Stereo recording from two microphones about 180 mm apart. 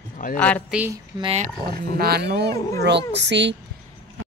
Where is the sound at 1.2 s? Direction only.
30° right (ahead or behind).